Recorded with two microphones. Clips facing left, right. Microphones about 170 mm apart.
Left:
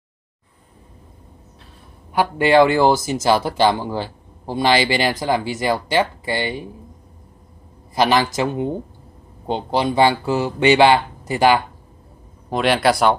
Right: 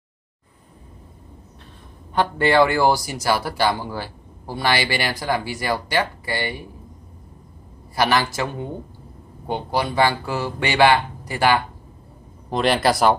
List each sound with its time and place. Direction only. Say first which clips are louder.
2.1 s speech: left 3 dB; 15° left (ahead or behind)
7.9 s speech: left 3 dB; 20° left (ahead or behind)
12.4 s speech: left 2 dB; centre (ahead or behind)